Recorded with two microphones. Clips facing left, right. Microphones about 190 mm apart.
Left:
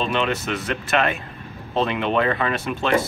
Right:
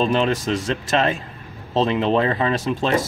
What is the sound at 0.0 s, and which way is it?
Speech, 35° right (ahead or behind).